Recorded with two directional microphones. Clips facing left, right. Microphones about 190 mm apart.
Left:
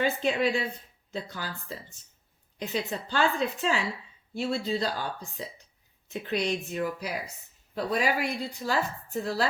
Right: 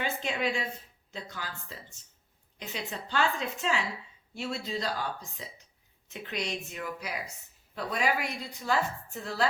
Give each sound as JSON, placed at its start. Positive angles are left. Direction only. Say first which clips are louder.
{"t": 0.0, "sound": "speech", "louder": "left 6 dB", "side_deg": 35}